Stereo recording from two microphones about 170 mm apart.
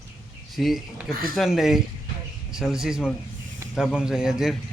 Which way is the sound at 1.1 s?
60° right (ahead or behind).